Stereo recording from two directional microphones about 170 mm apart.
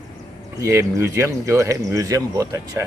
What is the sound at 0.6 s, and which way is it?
Speech, 15° right (ahead or behind).